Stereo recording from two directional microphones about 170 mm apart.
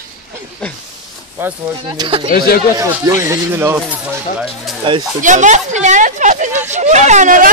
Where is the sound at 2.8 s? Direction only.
15° right (ahead or behind).